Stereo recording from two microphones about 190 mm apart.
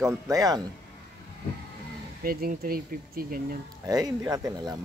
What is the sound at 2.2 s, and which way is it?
Speech, 50° right (ahead or behind).